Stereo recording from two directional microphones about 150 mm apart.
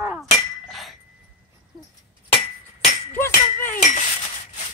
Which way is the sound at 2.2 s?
45° left (ahead or behind).